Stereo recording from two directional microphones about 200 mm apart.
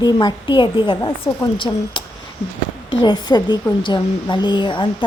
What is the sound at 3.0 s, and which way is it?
A woman's voice, 20° left (ahead or behind).